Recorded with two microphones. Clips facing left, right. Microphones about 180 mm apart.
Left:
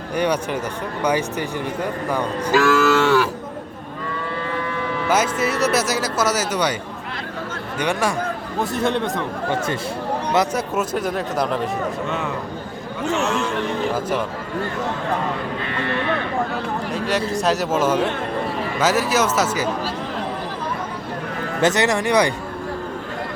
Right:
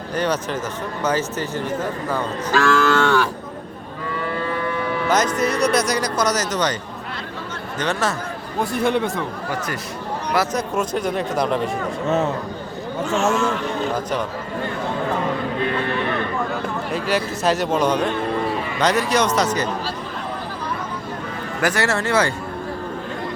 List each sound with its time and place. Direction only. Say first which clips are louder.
0.2 s speech: left 1 dB; 10° left (ahead or behind)
5.0 s speech: even; 10° left (ahead or behind)
7.8 s speech: left 1 dB; 10° left (ahead or behind)
8.6 s speech: right 1 dB; centre (ahead or behind)
10.5 s speech: even; 5° left (ahead or behind)
12.0 s a man's voice: right 5 dB; 40° right (ahead or behind)
16.9 s speech: even; centre (ahead or behind)
21.6 s speech: left 3 dB; 20° left (ahead or behind)